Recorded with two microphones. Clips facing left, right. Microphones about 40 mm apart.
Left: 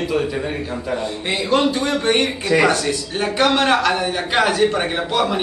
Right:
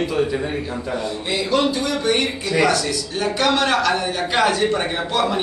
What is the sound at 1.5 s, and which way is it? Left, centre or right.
A man's voice, left.